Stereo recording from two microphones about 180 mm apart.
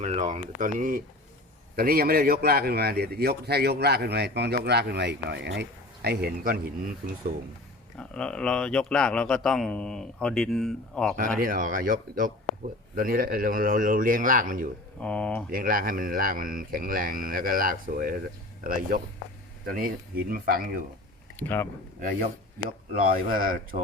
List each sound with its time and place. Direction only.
0.0 s a man's voice: 40° right (ahead or behind)
7.9 s a man's voice: 5° left (ahead or behind)
11.3 s speech: 50° right (ahead or behind)
15.0 s speech: 5° left (ahead or behind)
15.4 s speech: 50° right (ahead or behind)
21.3 s speech: 10° left (ahead or behind)
23.0 s speech: 50° right (ahead or behind)